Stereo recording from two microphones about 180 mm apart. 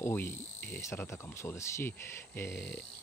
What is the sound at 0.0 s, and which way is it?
Speech, 10° left (ahead or behind).